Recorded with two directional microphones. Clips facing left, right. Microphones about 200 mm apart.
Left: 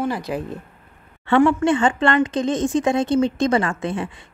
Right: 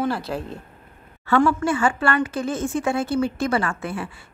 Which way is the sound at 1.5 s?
20° left (ahead or behind).